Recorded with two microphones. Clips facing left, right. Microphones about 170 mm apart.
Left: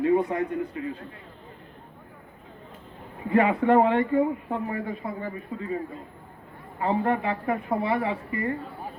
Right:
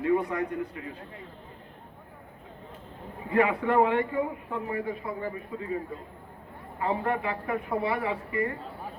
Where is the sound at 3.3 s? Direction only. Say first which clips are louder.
Left 3 dB; 25° left (ahead or behind).